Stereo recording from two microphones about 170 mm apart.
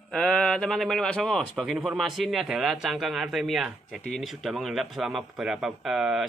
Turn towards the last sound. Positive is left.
turn(degrees=-5)  # may be behind; listen again after turning